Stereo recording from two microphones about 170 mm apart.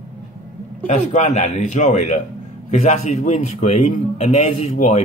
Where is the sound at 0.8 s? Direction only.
45° left (ahead or behind).